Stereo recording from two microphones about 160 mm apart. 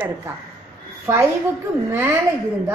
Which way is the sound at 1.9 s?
20° right (ahead or behind).